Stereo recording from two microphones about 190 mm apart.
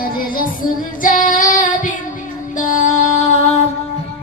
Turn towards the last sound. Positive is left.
turn(degrees=35)  # may be behind; listen again after turning